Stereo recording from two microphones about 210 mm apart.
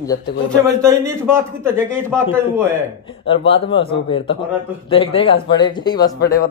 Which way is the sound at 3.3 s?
25° left (ahead or behind).